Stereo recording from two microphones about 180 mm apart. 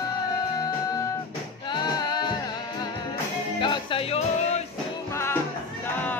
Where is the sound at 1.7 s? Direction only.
25° left (ahead or behind).